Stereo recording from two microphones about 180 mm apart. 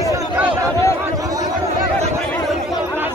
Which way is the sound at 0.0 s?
20° right (ahead or behind).